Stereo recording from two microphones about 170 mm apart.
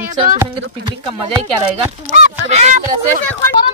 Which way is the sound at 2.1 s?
40° right (ahead or behind).